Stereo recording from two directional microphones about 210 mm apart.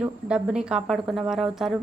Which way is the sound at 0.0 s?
5° right (ahead or behind).